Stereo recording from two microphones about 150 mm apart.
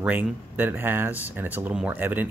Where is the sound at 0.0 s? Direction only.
10° right (ahead or behind).